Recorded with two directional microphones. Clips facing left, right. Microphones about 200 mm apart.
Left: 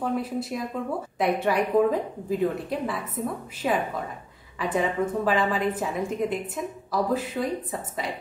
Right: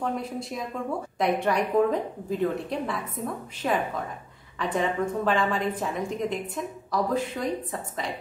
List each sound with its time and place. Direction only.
0.0 s a woman's voice: 5° left (ahead or behind)